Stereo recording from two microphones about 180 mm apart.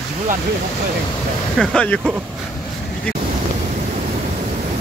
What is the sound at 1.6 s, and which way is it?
Speech, 5° left (ahead or behind).